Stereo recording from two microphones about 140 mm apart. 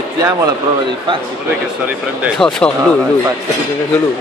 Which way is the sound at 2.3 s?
5° left (ahead or behind).